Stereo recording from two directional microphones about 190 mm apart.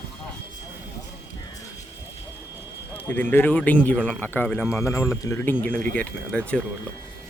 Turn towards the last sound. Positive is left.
turn(degrees=5)  # may be behind; listen again after turning